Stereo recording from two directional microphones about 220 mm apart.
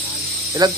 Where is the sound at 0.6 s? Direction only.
20° right (ahead or behind).